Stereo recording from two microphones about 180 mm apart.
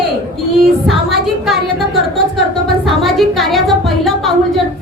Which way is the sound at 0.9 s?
Centre (ahead or behind).